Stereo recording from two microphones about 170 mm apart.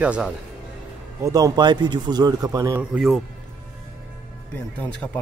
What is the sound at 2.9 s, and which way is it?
Speech, centre (ahead or behind).